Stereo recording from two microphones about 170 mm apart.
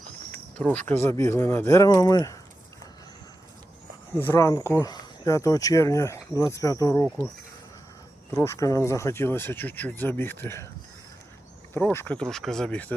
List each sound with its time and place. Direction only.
0.6 s speech: 10° left (ahead or behind)
4.3 s speech: 20° left (ahead or behind)
8.3 s speech: 15° left (ahead or behind)
11.7 s speech: 10° left (ahead or behind)